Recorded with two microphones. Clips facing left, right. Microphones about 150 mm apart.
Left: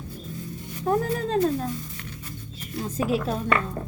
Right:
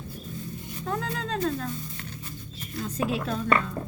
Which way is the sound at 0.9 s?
45° left (ahead or behind).